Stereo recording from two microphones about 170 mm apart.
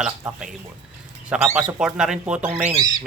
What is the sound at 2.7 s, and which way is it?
Speech, 25° right (ahead or behind).